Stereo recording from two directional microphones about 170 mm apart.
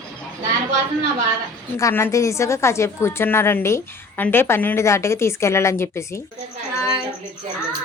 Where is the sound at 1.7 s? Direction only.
15° left (ahead or behind).